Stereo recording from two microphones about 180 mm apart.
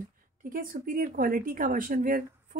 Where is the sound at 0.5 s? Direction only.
50° right (ahead or behind).